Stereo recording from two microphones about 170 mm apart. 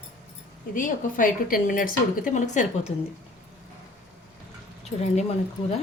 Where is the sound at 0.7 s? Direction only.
55° left (ahead or behind).